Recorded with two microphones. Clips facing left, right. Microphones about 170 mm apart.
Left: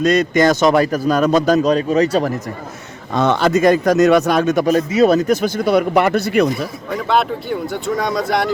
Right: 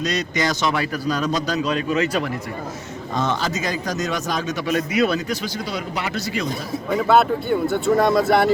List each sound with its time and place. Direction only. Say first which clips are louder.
0.0 s a man's voice: left 9 dB; 50° left (ahead or behind)
3.2 s speech: left 9 dB; 65° left (ahead or behind)
4.6 s speech: left 6 dB; 35° left (ahead or behind)
5.0 s speech: left 9 dB; 50° left (ahead or behind)
6.9 s speech: right 2 dB; centre (ahead or behind)